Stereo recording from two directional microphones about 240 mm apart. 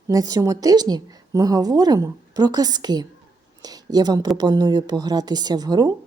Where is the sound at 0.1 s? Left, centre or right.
Centre.